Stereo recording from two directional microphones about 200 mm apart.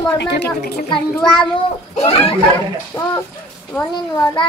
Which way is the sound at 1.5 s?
30° left (ahead or behind).